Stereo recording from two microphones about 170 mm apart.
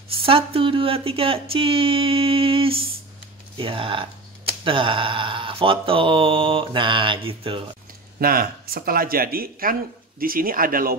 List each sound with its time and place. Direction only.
0.2 s speech: 35° right (ahead or behind)
8.2 s speech: 60° right (ahead or behind)